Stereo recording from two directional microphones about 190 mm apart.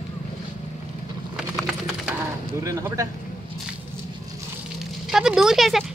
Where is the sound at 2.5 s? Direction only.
15° right (ahead or behind).